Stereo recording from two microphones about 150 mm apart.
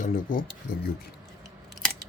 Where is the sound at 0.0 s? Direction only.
60° left (ahead or behind).